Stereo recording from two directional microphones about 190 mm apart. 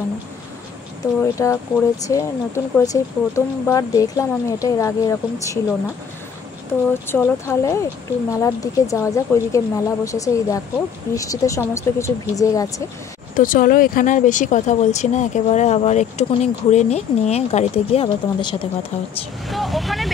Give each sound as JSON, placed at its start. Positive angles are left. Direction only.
{"t": 1.2, "sound": "speech", "side_deg": 15}
{"t": 6.7, "sound": "speech", "side_deg": 10}
{"t": 13.4, "sound": "speech", "side_deg": 45}
{"t": 19.4, "sound": "speech", "side_deg": 0}